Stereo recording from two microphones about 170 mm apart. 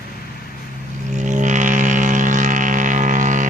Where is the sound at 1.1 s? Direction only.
45° right (ahead or behind).